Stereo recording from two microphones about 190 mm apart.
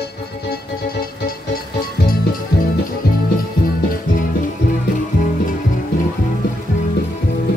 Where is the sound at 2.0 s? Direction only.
50° left (ahead or behind).